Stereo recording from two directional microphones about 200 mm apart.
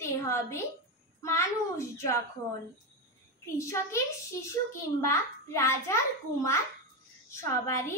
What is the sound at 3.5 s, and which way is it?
A child's voice, 15° left (ahead or behind).